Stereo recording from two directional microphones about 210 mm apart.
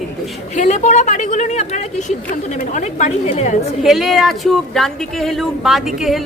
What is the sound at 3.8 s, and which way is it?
A woman's voice, centre (ahead or behind).